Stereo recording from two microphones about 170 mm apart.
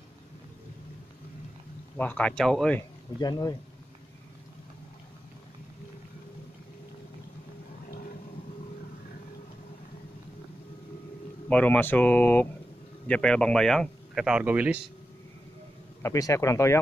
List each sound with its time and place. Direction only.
2.0 s speech: 10° left (ahead or behind)
3.2 s speech: 25° left (ahead or behind)
11.4 s speech: 10° left (ahead or behind); by 14.8 s 10° right (ahead or behind)
16.0 s speech: 20° left (ahead or behind)